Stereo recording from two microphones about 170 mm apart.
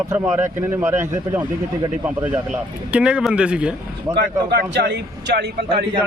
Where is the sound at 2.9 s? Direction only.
5° right (ahead or behind).